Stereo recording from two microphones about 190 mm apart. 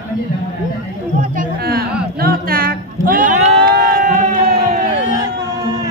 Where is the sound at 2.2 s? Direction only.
50° right (ahead or behind).